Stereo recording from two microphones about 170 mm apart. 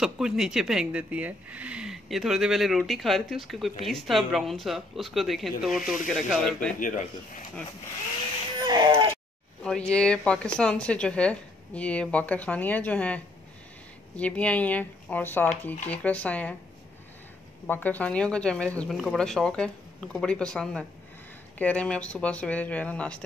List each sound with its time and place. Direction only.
0.0 s speech: 5° right (ahead or behind)
6.8 s speech: 45° left (ahead or behind)
8.6 s a sound: 25° right (ahead or behind)
9.6 s speech: 5° left (ahead or behind)
17.6 s speech: 10° left (ahead or behind)